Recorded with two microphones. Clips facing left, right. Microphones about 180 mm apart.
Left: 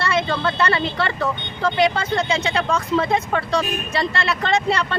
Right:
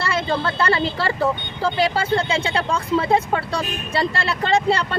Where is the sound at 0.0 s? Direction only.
30° right (ahead or behind).